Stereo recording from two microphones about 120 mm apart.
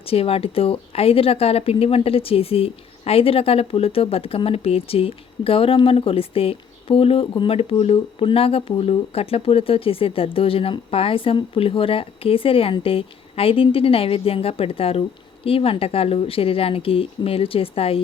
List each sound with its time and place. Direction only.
0.0 s speech: 55° left (ahead or behind)